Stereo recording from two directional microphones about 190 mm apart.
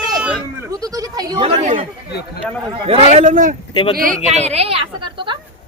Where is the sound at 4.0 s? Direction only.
40° right (ahead or behind).